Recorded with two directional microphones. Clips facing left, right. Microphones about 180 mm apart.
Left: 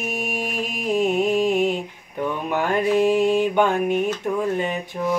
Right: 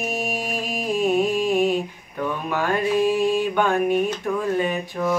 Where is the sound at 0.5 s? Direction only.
20° left (ahead or behind).